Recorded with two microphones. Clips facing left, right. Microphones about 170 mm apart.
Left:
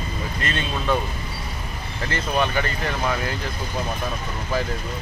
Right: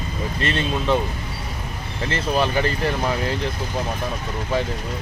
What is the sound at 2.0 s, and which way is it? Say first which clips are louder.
Speech: right 2 dB; 30° right (ahead or behind).